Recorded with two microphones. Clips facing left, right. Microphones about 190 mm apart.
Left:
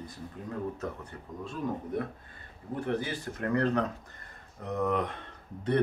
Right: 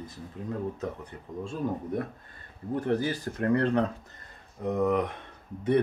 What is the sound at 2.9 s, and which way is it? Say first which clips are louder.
Speech: right 4 dB; 35° right (ahead or behind).